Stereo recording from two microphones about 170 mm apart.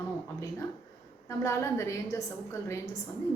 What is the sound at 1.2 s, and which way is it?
A woman's voice, 15° left (ahead or behind).